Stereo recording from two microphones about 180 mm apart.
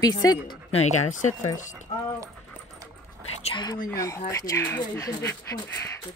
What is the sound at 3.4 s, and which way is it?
Speech, 25° left (ahead or behind).